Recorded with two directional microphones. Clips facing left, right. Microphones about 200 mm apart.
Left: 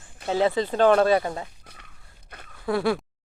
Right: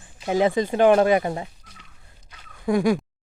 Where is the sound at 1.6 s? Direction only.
60° left (ahead or behind).